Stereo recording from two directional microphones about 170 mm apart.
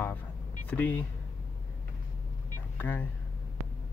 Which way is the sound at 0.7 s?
10° left (ahead or behind).